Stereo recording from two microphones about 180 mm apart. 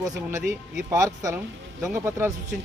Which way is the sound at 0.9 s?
20° right (ahead or behind).